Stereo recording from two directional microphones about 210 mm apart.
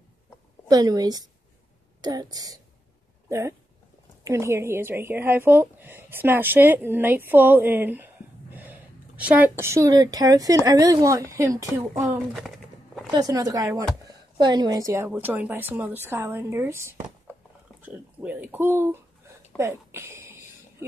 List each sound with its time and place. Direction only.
0.7 s a woman's voice: 15° right (ahead or behind)
11.9 s a sound: 10° right (ahead or behind)
13.1 s a woman's voice: 20° right (ahead or behind)